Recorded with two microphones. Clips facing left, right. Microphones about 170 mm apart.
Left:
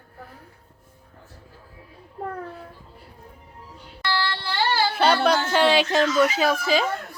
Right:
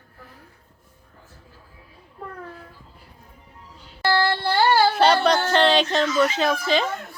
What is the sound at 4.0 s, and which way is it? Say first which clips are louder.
Child singing: right 6 dB; 45° right (ahead or behind).